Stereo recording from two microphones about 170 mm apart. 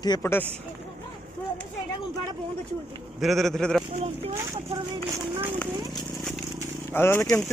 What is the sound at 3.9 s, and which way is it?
Speech, 40° right (ahead or behind).